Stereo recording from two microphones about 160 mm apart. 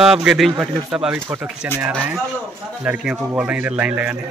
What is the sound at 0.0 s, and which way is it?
A man's voice, 5° right (ahead or behind).